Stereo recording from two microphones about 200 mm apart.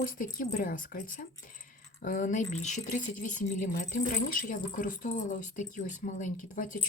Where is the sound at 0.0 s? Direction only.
45° left (ahead or behind).